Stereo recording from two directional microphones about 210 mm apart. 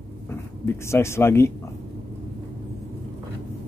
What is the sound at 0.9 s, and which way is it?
Speech, 10° left (ahead or behind).